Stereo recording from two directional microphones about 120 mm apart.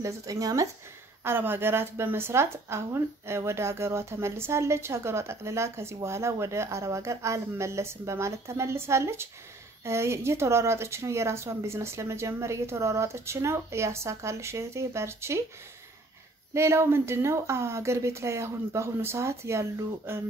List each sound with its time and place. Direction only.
0.0 s a woman's voice: 30° right (ahead or behind)
1.2 s a woman's voice: 20° right (ahead or behind)
16.5 s a woman's voice: 20° right (ahead or behind)